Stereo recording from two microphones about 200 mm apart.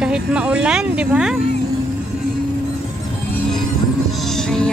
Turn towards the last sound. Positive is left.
turn(degrees=5)  # may be behind; listen again after turning